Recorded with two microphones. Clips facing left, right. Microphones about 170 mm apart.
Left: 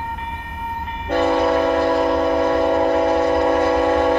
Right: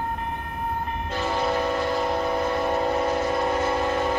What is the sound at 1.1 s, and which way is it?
Train, 60° left (ahead or behind).